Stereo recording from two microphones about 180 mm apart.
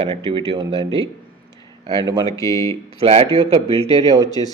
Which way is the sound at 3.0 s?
30° right (ahead or behind).